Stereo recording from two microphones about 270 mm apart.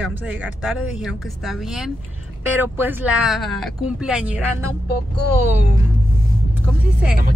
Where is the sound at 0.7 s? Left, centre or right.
Centre.